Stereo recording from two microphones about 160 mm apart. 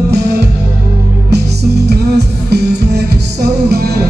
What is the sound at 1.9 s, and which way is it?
Music, 90° right.